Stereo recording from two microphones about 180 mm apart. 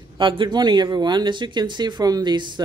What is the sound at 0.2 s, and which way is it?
Speech, 25° right (ahead or behind).